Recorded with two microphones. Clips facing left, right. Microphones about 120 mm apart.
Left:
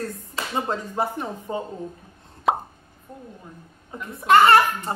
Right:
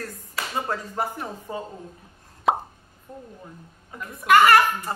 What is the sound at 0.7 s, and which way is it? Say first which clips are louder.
Speech: left 2 dB; 20° left (ahead or behind).